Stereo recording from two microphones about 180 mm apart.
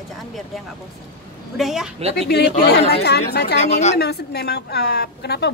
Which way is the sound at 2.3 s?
65° left (ahead or behind).